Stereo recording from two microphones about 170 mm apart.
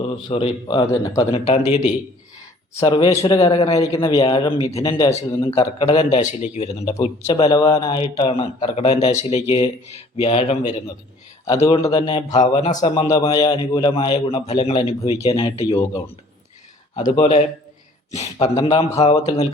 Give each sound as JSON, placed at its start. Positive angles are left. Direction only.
{"t": 0.3, "sound": "speech", "side_deg": 30}
{"t": 1.3, "sound": "speech", "side_deg": 40}
{"t": 2.8, "sound": "speech", "side_deg": 25}
{"t": 6.8, "sound": "speech", "side_deg": 20}
{"t": 11.7, "sound": "speech", "side_deg": 20}
{"t": 12.3, "sound": "speech", "side_deg": 40}
{"t": 13.2, "sound": "speech", "side_deg": 25}
{"t": 17.0, "sound": "speech", "side_deg": 40}